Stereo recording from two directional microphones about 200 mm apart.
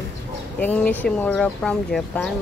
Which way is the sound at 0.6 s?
10° left (ahead or behind).